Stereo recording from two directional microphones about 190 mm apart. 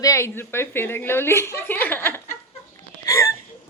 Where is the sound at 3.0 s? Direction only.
15° left (ahead or behind).